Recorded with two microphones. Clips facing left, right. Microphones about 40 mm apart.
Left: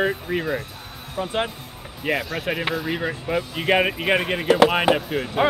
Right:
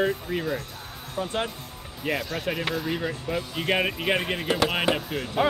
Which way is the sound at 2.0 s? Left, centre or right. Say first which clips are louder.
Left 3 dB; left.